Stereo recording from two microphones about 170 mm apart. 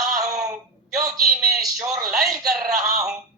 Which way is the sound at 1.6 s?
20° right (ahead or behind).